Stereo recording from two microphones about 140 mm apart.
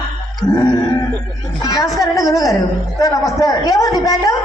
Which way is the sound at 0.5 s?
30° left (ahead or behind).